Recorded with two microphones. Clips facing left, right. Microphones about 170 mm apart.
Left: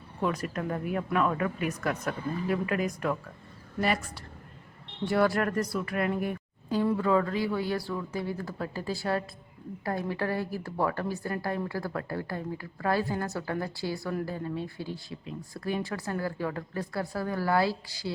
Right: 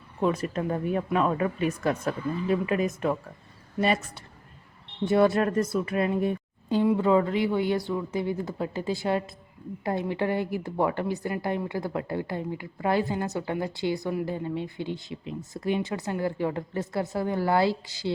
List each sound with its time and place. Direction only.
0.2 s a woman's voice: 25° right (ahead or behind)